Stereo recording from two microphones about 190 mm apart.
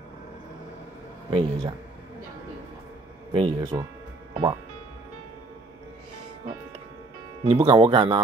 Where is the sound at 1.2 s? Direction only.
30° right (ahead or behind).